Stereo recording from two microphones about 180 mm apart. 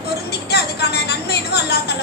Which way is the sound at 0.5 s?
65° left (ahead or behind).